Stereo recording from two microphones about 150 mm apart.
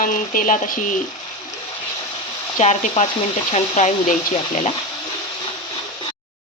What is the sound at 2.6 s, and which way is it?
Speech, 50° left (ahead or behind).